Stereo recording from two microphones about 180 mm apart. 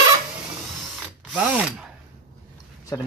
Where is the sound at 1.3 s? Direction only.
5° right (ahead or behind).